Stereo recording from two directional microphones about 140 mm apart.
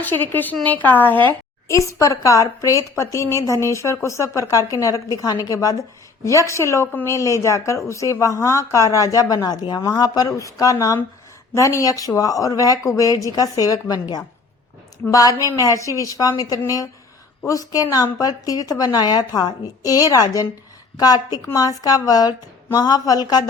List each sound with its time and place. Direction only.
0.0 s a woman's voice: 15° left (ahead or behind); by 23.5 s 30° left (ahead or behind)